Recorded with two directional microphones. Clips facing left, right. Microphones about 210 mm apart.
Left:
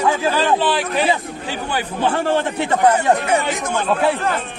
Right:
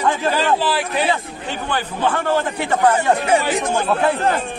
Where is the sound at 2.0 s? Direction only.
30° left (ahead or behind).